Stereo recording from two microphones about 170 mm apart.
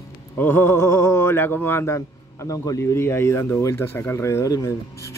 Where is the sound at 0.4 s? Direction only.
10° left (ahead or behind).